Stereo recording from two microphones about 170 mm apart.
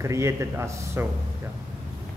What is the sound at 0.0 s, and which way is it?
A man's voice, 15° right (ahead or behind).